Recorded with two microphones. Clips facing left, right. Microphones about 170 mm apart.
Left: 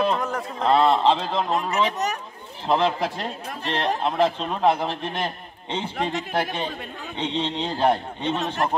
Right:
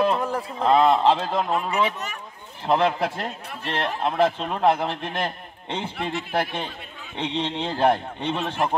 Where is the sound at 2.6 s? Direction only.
10° right (ahead or behind).